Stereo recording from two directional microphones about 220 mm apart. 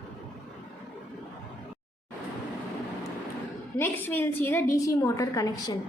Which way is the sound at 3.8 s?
10° left (ahead or behind).